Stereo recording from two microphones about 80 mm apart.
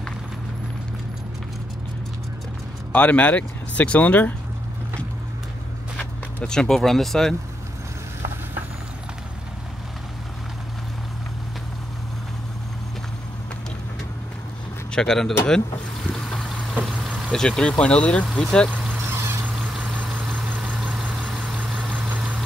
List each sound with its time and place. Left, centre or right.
2.9 s speech: centre
5.9 s speech: centre
14.9 s a man's voice: centre
16.1 s vehicle: centre
19.0 s vehicle: right
20.4 s vehicle: right
21.3 s vehicle: centre
21.8 s vehicle: right